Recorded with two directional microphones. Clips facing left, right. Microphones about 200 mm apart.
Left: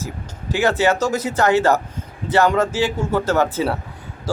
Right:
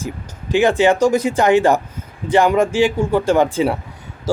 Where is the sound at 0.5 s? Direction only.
15° right (ahead or behind).